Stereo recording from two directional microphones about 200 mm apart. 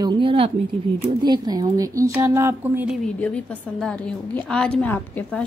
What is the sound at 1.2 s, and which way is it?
Speech, 20° right (ahead or behind).